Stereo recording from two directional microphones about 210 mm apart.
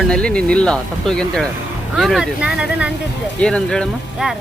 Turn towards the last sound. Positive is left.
turn(degrees=0)  # may be behind; listen again after turning